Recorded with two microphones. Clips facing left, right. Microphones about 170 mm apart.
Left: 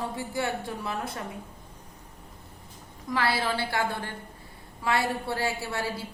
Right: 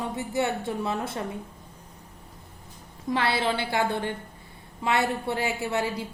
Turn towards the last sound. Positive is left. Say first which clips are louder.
# right 4 dB
turn(degrees=-20)  # may be behind; listen again after turning